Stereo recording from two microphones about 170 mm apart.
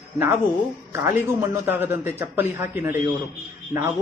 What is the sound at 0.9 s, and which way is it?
Speech, 15° right (ahead or behind).